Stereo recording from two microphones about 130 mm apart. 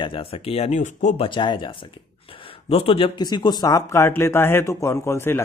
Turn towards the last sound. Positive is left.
turn(degrees=20)  # may be behind; listen again after turning